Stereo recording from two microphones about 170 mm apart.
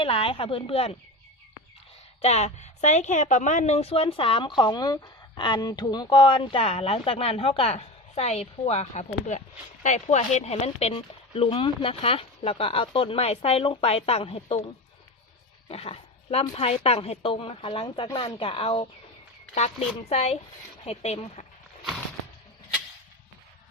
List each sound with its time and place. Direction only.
0.0 s a woman's voice: 35° left (ahead or behind)
2.2 s a woman's voice: 40° left (ahead or behind)
15.7 s a woman's voice: 35° left (ahead or behind)